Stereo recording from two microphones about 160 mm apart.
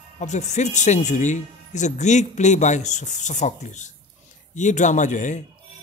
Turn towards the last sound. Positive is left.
turn(degrees=50)  # may be behind; listen again after turning